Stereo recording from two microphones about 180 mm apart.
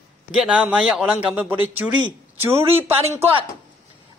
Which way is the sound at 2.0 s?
25° right (ahead or behind).